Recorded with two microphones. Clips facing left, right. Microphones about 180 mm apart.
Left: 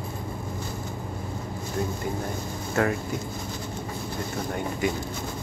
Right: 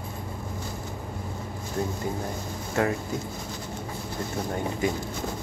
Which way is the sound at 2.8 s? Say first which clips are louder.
Left 1 dB; 20° right (ahead or behind).